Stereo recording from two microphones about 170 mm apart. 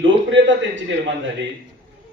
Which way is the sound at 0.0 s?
90° right.